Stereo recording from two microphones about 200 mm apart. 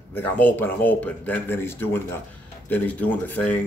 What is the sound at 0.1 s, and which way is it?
Speech, 10° left (ahead or behind).